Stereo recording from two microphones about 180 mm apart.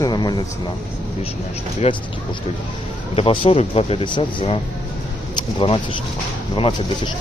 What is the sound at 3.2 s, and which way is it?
Speech, 30° left (ahead or behind).